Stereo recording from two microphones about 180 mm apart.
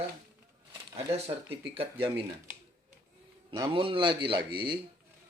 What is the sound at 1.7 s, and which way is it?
Speech, 30° right (ahead or behind).